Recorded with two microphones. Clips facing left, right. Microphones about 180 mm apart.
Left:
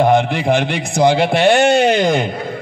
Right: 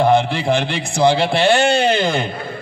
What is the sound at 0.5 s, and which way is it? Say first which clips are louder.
A man's voice: left 2 dB; 15° left (ahead or behind).